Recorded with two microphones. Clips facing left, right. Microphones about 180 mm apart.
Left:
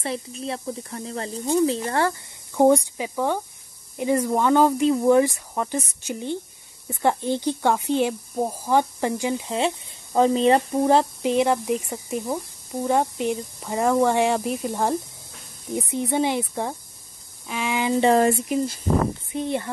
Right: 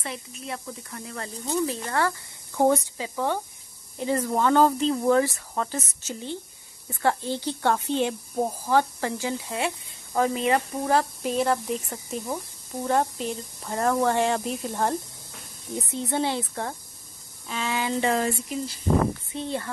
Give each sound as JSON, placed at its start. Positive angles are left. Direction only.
{"t": 0.0, "sound": "speech", "side_deg": 30}
{"t": 2.5, "sound": "speech", "side_deg": 15}
{"t": 19.3, "sound": "speech", "side_deg": 15}